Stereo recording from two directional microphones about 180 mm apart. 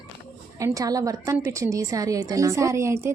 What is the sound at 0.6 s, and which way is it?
A woman's voice, 20° right (ahead or behind).